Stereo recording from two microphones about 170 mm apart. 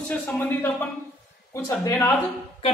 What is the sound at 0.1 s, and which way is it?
Speech, 10° left (ahead or behind).